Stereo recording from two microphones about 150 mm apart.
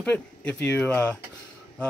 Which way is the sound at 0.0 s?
10° left (ahead or behind).